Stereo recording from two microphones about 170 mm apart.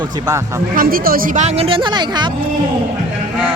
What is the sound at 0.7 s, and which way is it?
Speech, 55° right (ahead or behind).